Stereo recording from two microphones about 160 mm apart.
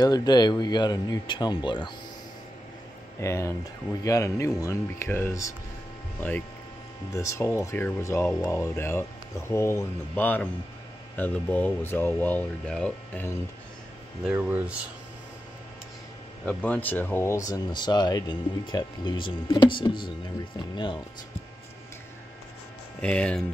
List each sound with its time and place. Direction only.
0.0 s speech: 25° left (ahead or behind)
3.2 s speech: 15° left (ahead or behind)
7.1 s speech: 20° left (ahead or behind)
14.2 s speech: 10° right (ahead or behind)
16.4 s speech: 10° left (ahead or behind); by 21.0 s 30° left (ahead or behind)
22.9 s speech: 5° left (ahead or behind)